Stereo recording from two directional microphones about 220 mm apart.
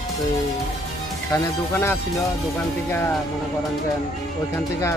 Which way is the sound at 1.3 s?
10° left (ahead or behind).